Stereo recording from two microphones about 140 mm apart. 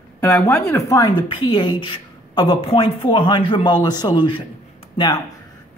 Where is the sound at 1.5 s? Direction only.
35° left (ahead or behind).